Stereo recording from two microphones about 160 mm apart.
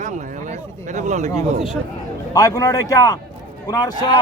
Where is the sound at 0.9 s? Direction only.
45° right (ahead or behind).